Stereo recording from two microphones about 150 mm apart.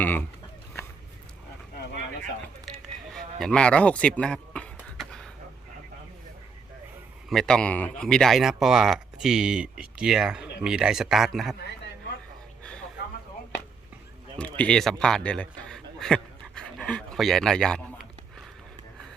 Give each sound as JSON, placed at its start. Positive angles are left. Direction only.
{"t": 0.0, "sound": "speech", "side_deg": 10}
{"t": 3.4, "sound": "a sound", "side_deg": 5}
{"t": 7.3, "sound": "speech", "side_deg": 5}
{"t": 14.3, "sound": "speech", "side_deg": 10}